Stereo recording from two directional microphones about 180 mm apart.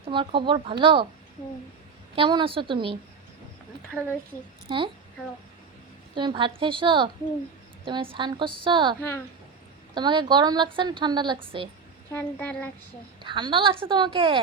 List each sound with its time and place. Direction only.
0.0 s a woman's voice: 30° right (ahead or behind)
2.1 s a woman's voice: 30° right (ahead or behind)
4.7 s a woman's voice: 25° right (ahead or behind)
6.1 s a woman's voice: 25° right (ahead or behind)
9.0 s speech: 15° left (ahead or behind)
9.9 s a woman's voice: 25° right (ahead or behind)
12.1 s speech: 10° left (ahead or behind)
13.2 s a woman's voice: 25° right (ahead or behind)